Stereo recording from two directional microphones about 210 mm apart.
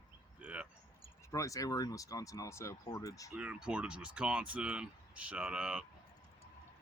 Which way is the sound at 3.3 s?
5° right (ahead or behind).